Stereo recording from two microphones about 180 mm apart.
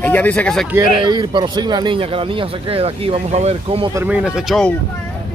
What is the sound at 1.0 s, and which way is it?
Speech, 25° right (ahead or behind).